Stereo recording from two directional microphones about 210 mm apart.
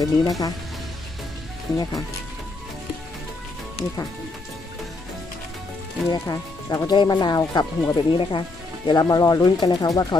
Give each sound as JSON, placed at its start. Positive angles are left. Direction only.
{"t": 0.0, "sound": "speech", "side_deg": 15}
{"t": 1.8, "sound": "speech", "side_deg": 20}
{"t": 6.0, "sound": "speech", "side_deg": 15}